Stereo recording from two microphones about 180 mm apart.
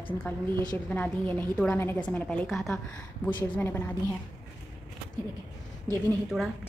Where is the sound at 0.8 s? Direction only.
10° left (ahead or behind).